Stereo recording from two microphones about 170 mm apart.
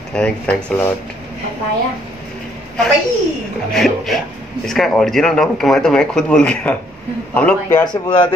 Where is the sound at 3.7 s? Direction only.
Centre (ahead or behind).